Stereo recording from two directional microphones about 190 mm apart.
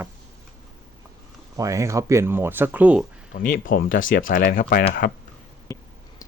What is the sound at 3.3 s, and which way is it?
Speech, 50° left (ahead or behind).